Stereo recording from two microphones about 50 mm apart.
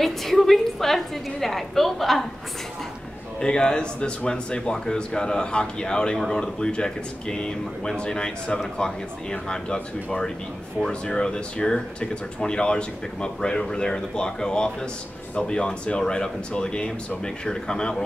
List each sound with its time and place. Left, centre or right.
0.0 s a woman's voice: centre
3.3 s speech: centre
10.9 s speech: centre